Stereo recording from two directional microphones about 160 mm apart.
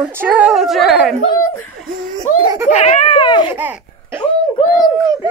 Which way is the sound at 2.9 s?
30° left (ahead or behind).